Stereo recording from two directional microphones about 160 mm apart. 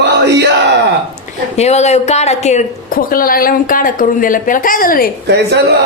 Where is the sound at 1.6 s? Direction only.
45° left (ahead or behind).